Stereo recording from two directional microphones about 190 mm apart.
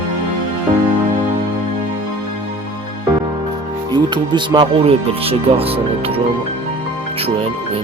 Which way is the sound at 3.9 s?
25° right (ahead or behind).